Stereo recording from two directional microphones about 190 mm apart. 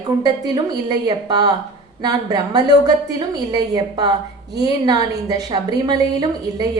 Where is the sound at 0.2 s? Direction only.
20° right (ahead or behind).